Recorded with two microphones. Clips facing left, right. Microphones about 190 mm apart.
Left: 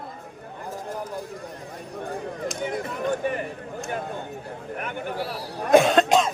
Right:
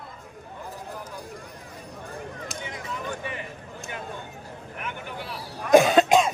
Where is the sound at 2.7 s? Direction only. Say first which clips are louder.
Left 7 dB; 60° left (ahead or behind).